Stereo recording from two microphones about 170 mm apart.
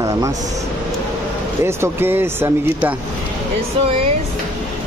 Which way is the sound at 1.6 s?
15° right (ahead or behind).